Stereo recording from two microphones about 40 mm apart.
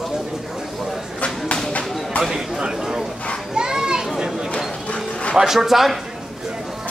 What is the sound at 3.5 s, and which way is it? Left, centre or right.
Children playing, centre.